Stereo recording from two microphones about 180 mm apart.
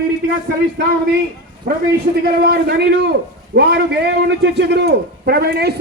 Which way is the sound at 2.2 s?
60° right (ahead or behind).